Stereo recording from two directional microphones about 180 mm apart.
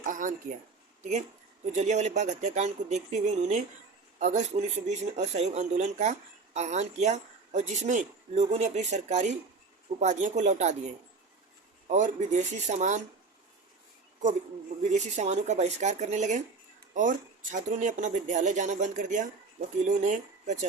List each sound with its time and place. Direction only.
0.0 s speech: 45° right (ahead or behind)
1.6 s speech: 40° right (ahead or behind)
14.8 s speech: 40° right (ahead or behind)